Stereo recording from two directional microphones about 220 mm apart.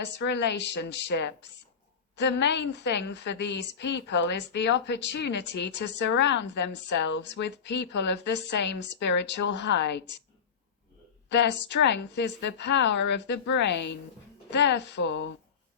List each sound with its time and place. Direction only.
0.0 s a woman's voice: 50° left (ahead or behind)
11.3 s a woman's voice: 55° left (ahead or behind)